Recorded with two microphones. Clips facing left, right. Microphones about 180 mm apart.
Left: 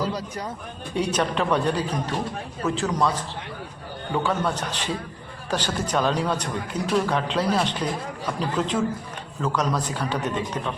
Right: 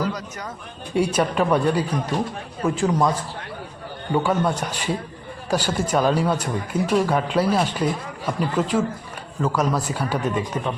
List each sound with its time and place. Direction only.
0.0 s a man's voice: 30° left (ahead or behind)
0.9 s a man's voice: 10° right (ahead or behind)